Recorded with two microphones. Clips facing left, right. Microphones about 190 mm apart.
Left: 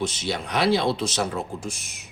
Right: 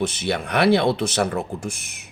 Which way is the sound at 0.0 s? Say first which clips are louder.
Right 4 dB; 60° right (ahead or behind).